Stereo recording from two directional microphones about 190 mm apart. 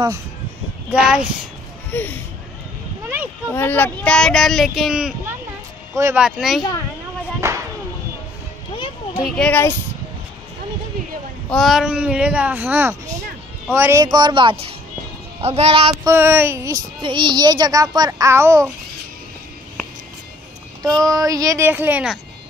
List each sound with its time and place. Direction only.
0.8 s speech: 5° right (ahead or behind)
1.9 s speech: 10° left (ahead or behind)
3.5 s speech: 10° left (ahead or behind)
5.9 s speech: 15° right (ahead or behind)
6.2 s speech: 5° right (ahead or behind)
7.3 s a sound: 15° right (ahead or behind)
9.1 s a child's voice: centre (ahead or behind)
11.5 s a child's voice: centre (ahead or behind); by 15.8 s 35° right (ahead or behind)
15.9 s speech: 15° right (ahead or behind)
17.0 s a child's voice: 25° right (ahead or behind)
21.1 s speech: 20° right (ahead or behind)